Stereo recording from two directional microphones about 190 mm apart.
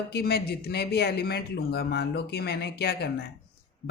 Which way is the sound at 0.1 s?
55° left (ahead or behind).